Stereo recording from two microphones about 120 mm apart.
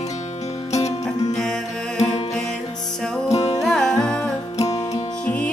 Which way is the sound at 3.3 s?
65° left (ahead or behind).